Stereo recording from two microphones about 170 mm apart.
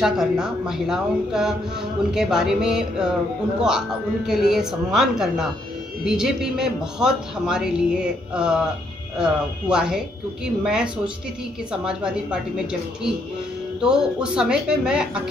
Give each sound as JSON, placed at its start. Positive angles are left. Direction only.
{"t": 0.0, "sound": "speech", "side_deg": -5}
{"t": 4.3, "sound": "speech", "side_deg": -5}